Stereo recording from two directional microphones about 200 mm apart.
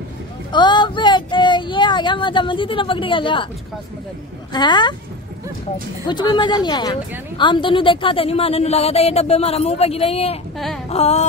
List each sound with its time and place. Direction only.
0.5 s child singing: 20° left (ahead or behind)
4.5 s a woman's voice: 20° left (ahead or behind)
6.0 s a woman's voice: 20° left (ahead or behind)
10.9 s a sound: 30° left (ahead or behind)